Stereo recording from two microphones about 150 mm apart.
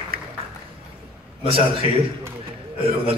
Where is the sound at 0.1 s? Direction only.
90° right.